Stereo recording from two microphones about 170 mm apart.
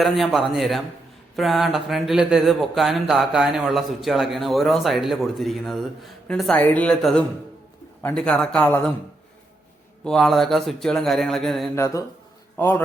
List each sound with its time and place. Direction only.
0.0 s speech: centre (ahead or behind)
10.0 s speech: 5° left (ahead or behind)
11.7 s a man's voice: 15° left (ahead or behind)